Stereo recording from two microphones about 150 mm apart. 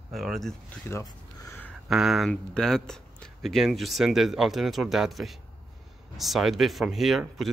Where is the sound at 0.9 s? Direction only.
20° left (ahead or behind).